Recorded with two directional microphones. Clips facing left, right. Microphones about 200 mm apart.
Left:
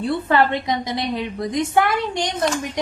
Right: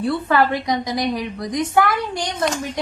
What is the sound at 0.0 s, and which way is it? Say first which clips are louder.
A woman's voice: even; 25° left (ahead or behind).